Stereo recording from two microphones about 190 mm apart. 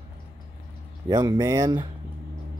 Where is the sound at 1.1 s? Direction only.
20° right (ahead or behind).